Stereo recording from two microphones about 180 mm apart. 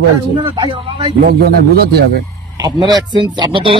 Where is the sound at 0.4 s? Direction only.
30° right (ahead or behind).